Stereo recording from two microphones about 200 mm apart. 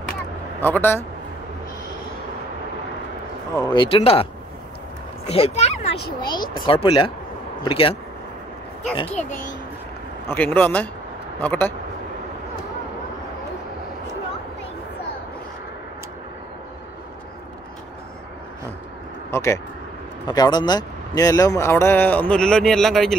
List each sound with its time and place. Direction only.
0.6 s speech: 10° left (ahead or behind)
3.5 s speech: 20° left (ahead or behind)
6.3 s speech: 20° left (ahead or behind)
10.2 s speech: 10° left (ahead or behind)
19.3 s speech: 15° left (ahead or behind)